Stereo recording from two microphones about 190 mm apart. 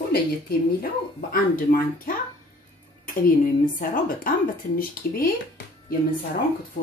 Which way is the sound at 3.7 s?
45° left (ahead or behind).